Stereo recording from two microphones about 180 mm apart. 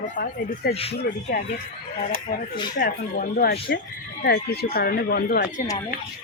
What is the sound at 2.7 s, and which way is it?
Speech, 50° left (ahead or behind).